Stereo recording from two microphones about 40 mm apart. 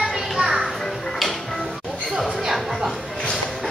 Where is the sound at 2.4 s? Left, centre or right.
Centre.